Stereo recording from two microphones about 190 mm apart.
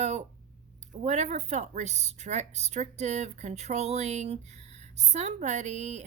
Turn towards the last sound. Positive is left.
turn(degrees=-35)  # may be behind; listen again after turning